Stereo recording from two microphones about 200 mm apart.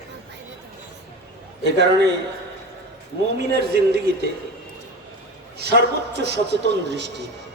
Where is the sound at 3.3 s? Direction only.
50° right (ahead or behind).